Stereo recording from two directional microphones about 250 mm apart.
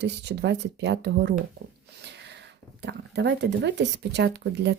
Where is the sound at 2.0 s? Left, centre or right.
Right.